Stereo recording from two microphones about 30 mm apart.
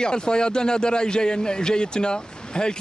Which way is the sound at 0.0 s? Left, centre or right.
Left.